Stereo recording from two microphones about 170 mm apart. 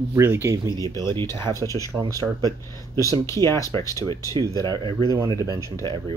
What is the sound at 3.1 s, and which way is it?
Speech, 15° left (ahead or behind).